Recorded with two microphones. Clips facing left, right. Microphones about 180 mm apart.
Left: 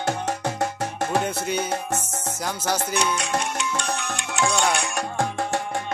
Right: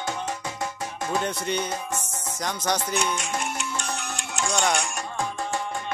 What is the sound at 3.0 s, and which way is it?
Music, 70° left (ahead or behind).